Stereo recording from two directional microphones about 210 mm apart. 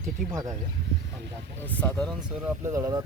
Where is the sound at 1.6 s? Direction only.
10° left (ahead or behind).